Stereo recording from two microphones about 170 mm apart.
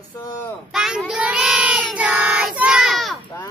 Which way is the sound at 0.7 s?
Centre (ahead or behind).